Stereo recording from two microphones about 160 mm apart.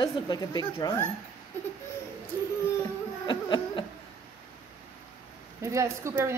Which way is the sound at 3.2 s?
30° left (ahead or behind).